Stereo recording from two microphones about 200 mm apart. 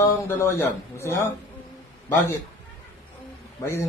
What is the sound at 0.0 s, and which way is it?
A man's voice, 10° left (ahead or behind).